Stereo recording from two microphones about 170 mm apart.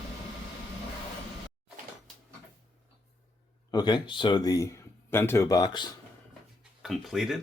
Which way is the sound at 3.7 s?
25° left (ahead or behind).